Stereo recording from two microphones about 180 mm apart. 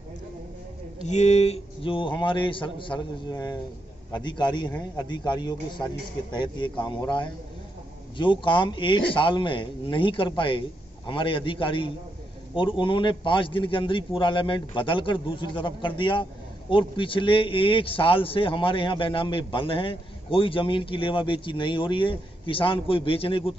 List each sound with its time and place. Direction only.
1.0 s a man's voice: 40° left (ahead or behind)